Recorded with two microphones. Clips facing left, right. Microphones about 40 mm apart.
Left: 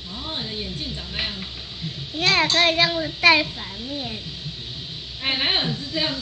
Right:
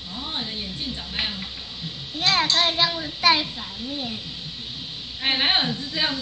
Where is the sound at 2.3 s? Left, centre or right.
Left.